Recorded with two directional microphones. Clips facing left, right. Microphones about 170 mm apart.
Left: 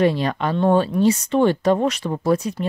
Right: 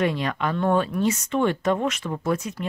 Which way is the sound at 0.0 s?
30° left (ahead or behind).